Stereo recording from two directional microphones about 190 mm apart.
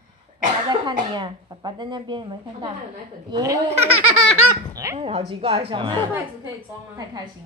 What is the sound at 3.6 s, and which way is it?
Speech, 35° right (ahead or behind).